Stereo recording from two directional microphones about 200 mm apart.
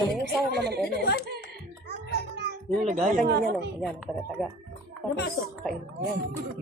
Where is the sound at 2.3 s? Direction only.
55° right (ahead or behind).